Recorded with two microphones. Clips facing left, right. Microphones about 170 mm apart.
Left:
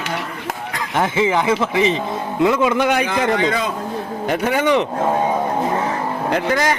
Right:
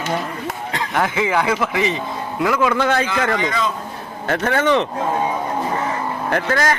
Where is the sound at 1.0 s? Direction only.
20° left (ahead or behind).